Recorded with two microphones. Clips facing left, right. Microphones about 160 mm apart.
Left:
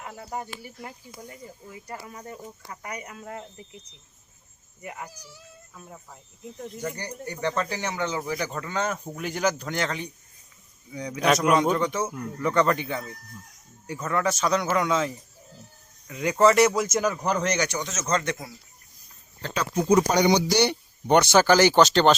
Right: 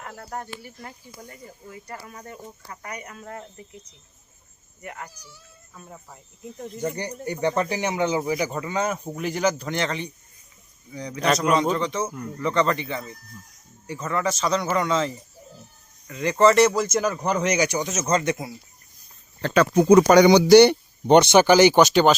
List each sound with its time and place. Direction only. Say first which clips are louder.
0.0 s a man's voice: even; 5° left (ahead or behind)
1.1 s speech: left 1 dB; 20° left (ahead or behind)
2.1 s a man's voice: even; 5° left (ahead or behind)
2.8 s speech: even; 10° left (ahead or behind)
4.8 s speech: even; 10° left (ahead or behind)
5.7 s a man's voice: right 2 dB; centre (ahead or behind)
6.8 s a man's voice: right 6 dB; 20° right (ahead or behind); by 17.6 s centre (ahead or behind)
17.6 s speech: right 5 dB; 20° right (ahead or behind)
19.4 s speech: right 9 dB; 70° right (ahead or behind)
21.1 s speech: right 4 dB; 20° right (ahead or behind)